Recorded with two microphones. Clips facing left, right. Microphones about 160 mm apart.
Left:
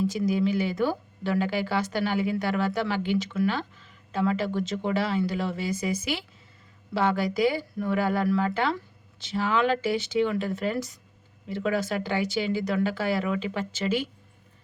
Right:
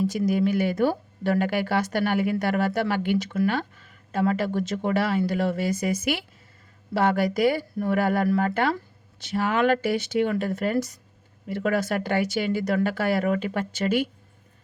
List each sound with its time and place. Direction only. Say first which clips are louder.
0.3 s speech: right 2 dB; 50° right (ahead or behind)